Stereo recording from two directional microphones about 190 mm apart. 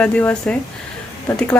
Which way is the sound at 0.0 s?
10° left (ahead or behind).